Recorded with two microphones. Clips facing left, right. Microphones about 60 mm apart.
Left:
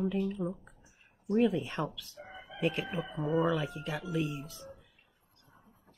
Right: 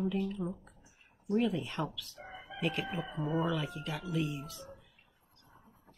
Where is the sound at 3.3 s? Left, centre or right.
Left.